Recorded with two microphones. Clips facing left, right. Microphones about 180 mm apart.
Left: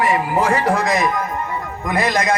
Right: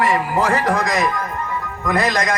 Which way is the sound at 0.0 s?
20° left (ahead or behind).